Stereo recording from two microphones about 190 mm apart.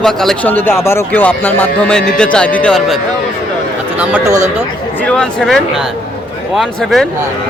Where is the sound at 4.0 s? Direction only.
10° right (ahead or behind).